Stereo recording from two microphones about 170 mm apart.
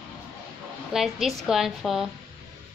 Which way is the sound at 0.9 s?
Centre (ahead or behind).